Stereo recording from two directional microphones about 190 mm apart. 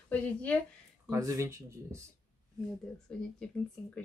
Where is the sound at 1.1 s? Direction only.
15° right (ahead or behind).